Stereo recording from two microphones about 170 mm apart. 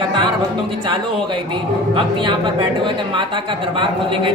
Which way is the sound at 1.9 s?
30° right (ahead or behind).